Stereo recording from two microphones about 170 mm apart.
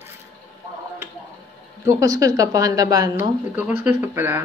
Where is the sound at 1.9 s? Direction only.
20° right (ahead or behind).